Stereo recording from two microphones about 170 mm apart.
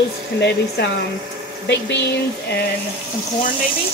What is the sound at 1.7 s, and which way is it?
Speech, 90° left.